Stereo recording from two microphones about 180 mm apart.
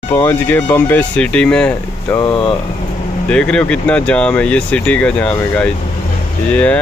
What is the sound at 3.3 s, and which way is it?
Speech, 5° left (ahead or behind).